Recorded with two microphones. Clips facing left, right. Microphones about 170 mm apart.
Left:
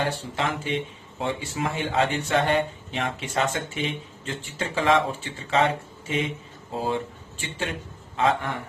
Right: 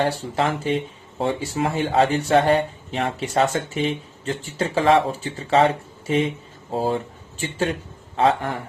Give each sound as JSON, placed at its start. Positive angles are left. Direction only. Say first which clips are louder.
{"t": 0.0, "sound": "speech", "louder": "right 5 dB", "side_deg": -40}
{"t": 8.1, "sound": "a man's voice", "louder": "right 4 dB", "side_deg": -35}